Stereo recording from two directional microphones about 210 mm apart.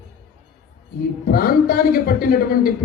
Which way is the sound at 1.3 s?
45° left (ahead or behind).